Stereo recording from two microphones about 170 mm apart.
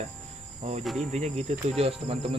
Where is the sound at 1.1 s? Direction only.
40° right (ahead or behind).